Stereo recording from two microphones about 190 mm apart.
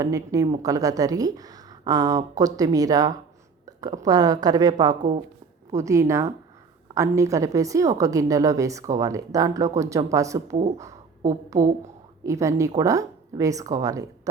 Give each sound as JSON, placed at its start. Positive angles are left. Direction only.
{"t": 0.0, "sound": "a woman's voice", "side_deg": -15}
{"t": 3.7, "sound": "a sound", "side_deg": -20}
{"t": 4.0, "sound": "a woman's voice", "side_deg": -20}
{"t": 12.2, "sound": "a woman's voice", "side_deg": -15}